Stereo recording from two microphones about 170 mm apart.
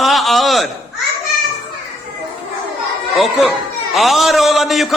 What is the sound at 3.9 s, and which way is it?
A man's voice, centre (ahead or behind).